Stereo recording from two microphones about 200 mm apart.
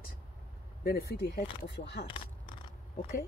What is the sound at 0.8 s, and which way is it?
Speech, 50° left (ahead or behind).